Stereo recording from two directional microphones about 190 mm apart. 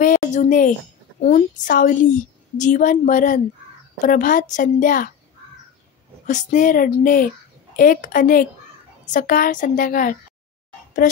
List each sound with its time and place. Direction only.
0.0 s a woman's voice: 40° left (ahead or behind)
6.2 s speech: 45° left (ahead or behind)